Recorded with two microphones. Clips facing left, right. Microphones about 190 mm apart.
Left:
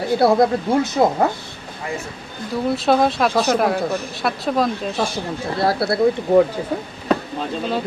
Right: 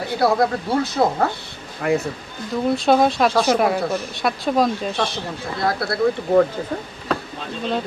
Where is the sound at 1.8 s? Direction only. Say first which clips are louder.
Right 9 dB; 70° right (ahead or behind).